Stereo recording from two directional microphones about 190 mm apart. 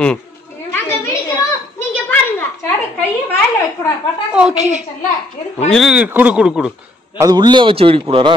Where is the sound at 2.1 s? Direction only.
10° left (ahead or behind).